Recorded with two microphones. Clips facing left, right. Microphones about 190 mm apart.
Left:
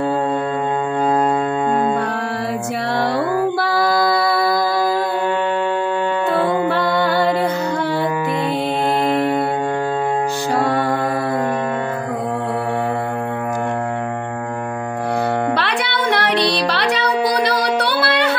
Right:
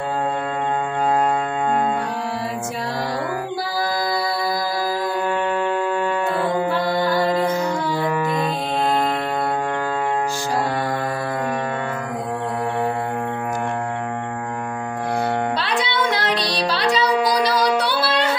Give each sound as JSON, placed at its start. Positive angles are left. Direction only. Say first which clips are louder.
{"t": 3.6, "sound": "music", "louder": "left 6 dB", "side_deg": 65}
{"t": 6.8, "sound": "music", "louder": "left 2 dB", "side_deg": 65}
{"t": 15.5, "sound": "music", "louder": "left 2 dB", "side_deg": 65}